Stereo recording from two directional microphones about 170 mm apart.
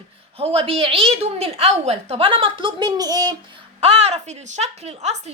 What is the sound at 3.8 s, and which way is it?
A woman's voice, 35° right (ahead or behind).